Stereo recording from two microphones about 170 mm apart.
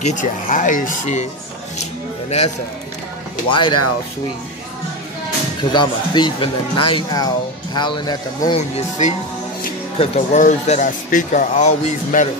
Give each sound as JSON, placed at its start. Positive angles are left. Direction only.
{"t": 0.0, "sound": "speech", "side_deg": 50}
{"t": 3.4, "sound": "speech", "side_deg": 30}
{"t": 5.6, "sound": "speech", "side_deg": 25}
{"t": 8.5, "sound": "speech", "side_deg": 40}